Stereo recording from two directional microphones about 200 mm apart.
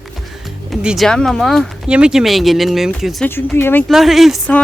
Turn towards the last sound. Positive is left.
turn(degrees=0)  # may be behind; listen again after turning